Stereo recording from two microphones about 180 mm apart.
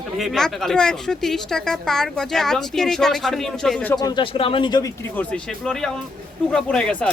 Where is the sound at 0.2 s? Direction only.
Centre (ahead or behind).